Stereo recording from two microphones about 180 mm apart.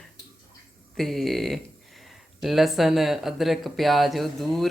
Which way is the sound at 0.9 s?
Centre (ahead or behind).